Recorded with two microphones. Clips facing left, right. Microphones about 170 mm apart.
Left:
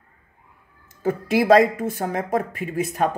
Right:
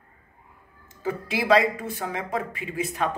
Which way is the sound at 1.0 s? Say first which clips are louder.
Left 6 dB; 45° left (ahead or behind).